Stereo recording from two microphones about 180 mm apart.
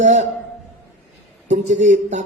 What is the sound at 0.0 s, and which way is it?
Speech, 40° right (ahead or behind).